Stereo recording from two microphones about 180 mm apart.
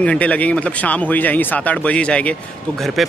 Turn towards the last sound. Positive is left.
turn(degrees=0)  # may be behind; listen again after turning